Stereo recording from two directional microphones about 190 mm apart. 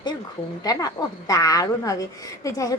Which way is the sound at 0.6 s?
20° left (ahead or behind).